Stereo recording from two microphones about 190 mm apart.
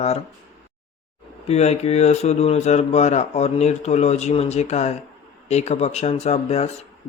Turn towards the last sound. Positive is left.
turn(degrees=35)  # may be behind; listen again after turning